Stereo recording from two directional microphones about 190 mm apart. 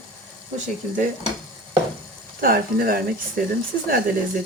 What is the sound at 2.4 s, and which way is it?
Speech, 50° right (ahead or behind).